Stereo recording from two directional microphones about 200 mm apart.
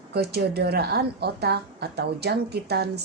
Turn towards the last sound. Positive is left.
turn(degrees=-55)  # may be behind; listen again after turning